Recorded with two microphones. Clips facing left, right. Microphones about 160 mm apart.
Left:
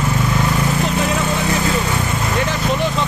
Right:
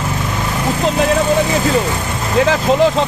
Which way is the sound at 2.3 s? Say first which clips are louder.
Right 9 dB; 90° right.